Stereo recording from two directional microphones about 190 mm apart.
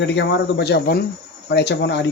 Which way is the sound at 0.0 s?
65° left (ahead or behind).